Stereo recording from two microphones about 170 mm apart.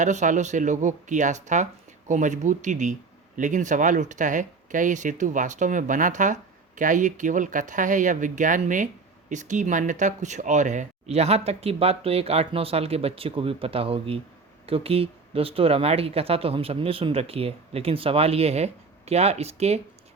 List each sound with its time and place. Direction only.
0.0 s speech: 45° right (ahead or behind)